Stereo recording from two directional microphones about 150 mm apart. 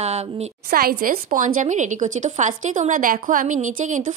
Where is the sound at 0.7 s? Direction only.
80° right.